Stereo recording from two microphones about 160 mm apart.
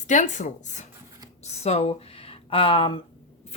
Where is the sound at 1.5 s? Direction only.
40° left (ahead or behind).